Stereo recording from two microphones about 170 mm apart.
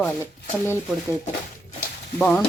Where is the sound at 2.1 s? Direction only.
10° left (ahead or behind).